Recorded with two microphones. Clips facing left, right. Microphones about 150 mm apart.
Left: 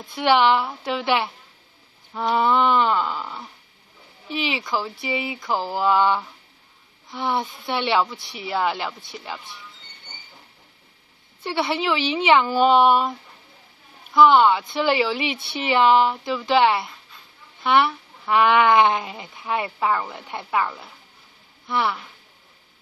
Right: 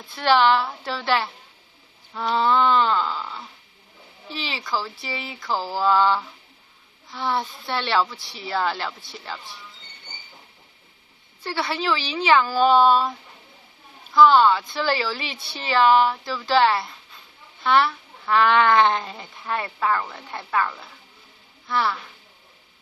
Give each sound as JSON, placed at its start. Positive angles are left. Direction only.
{"t": 0.0, "sound": "speech", "side_deg": 20}
{"t": 11.4, "sound": "speech", "side_deg": 20}
{"t": 14.1, "sound": "speech", "side_deg": 20}
{"t": 21.6, "sound": "speech", "side_deg": 20}